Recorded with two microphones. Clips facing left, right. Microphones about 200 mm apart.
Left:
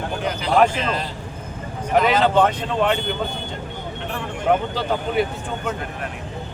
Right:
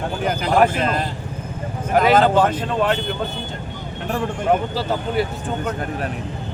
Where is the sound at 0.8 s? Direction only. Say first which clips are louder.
Right 3 dB; 50° right (ahead or behind).